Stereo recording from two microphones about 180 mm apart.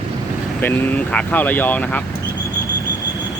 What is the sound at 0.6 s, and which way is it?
Speech, 10° left (ahead or behind).